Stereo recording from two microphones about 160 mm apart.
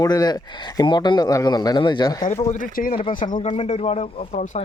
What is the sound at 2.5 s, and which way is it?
Speech, 55° left (ahead or behind).